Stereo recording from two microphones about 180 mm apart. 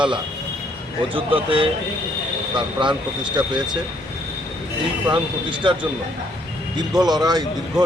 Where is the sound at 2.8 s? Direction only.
25° right (ahead or behind).